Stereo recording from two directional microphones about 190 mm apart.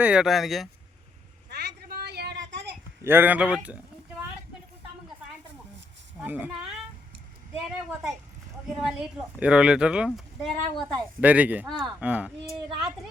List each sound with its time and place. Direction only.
0.0 s speech: 5° right (ahead or behind)
1.5 s a sound: 60° right (ahead or behind)
3.0 s speech: 10° right (ahead or behind)
6.1 s a woman's voice: 10° right (ahead or behind)
8.6 s speech: 5° right (ahead or behind)
11.7 s speech: centre (ahead or behind)
12.0 s speech: 10° right (ahead or behind)